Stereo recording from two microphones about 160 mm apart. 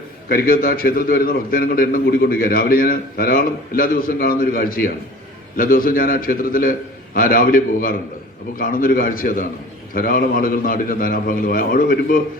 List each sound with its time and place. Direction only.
0.3 s a man's voice: 65° left (ahead or behind)